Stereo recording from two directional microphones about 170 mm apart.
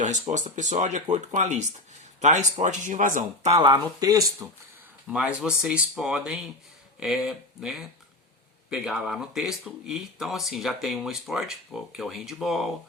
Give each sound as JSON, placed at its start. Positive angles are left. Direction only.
{"t": 0.0, "sound": "speech", "side_deg": -45}
{"t": 3.6, "sound": "speech", "side_deg": -25}
{"t": 5.0, "sound": "speech", "side_deg": -5}